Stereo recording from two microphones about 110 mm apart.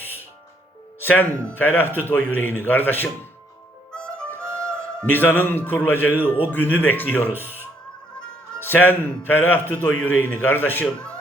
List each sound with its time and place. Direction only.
0.0 s music: 20° left (ahead or behind)
1.5 s a man's voice: 15° left (ahead or behind)
3.9 s music: 5° left (ahead or behind)
4.5 s a man's voice: 10° left (ahead or behind)
7.4 s music: 20° left (ahead or behind)
8.5 s a man's voice: 20° left (ahead or behind)